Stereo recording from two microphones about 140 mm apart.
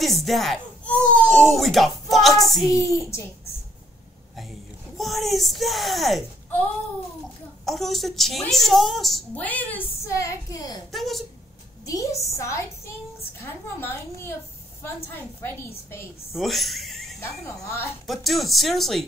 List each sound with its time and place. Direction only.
0.0 s a woman's voice: centre (ahead or behind)
2.6 s a woman's voice: 20° left (ahead or behind)
4.4 s speech: centre (ahead or behind)
7.6 s a woman's voice: centre (ahead or behind); by 10.8 s 25° left (ahead or behind)
10.9 s a woman's voice: centre (ahead or behind)
11.8 s a woman's voice: 25° left (ahead or behind)
16.3 s speech: centre (ahead or behind)
17.2 s a woman's voice: 20° left (ahead or behind)
18.0 s a woman's voice: centre (ahead or behind)